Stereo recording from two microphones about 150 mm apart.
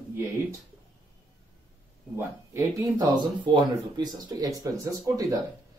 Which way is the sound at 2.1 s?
20° right (ahead or behind).